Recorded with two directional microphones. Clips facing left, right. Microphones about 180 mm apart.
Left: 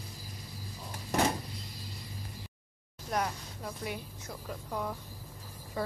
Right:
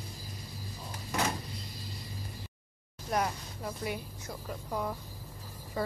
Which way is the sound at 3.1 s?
5° right (ahead or behind).